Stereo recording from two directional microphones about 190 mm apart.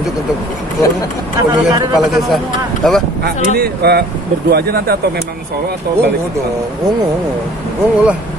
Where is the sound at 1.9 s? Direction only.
Centre (ahead or behind).